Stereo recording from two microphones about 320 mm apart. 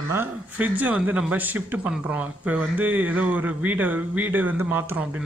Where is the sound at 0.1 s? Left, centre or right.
Centre.